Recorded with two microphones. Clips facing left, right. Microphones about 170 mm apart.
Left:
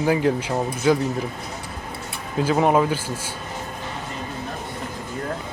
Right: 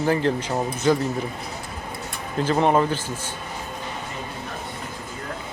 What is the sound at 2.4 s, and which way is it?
Speech, 5° left (ahead or behind).